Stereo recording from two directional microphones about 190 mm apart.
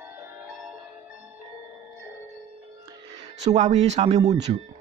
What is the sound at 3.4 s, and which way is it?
Speech, 35° right (ahead or behind).